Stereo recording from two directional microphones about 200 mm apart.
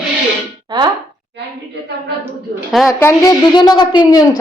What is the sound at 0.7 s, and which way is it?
Plop, 20° right (ahead or behind).